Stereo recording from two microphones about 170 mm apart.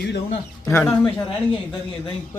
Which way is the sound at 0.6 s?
15° left (ahead or behind).